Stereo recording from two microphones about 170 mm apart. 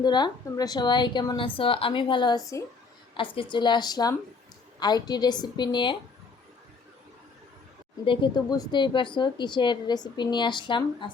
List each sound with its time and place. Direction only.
0.0 s a woman's voice: 25° left (ahead or behind)
8.0 s a woman's voice: 30° left (ahead or behind)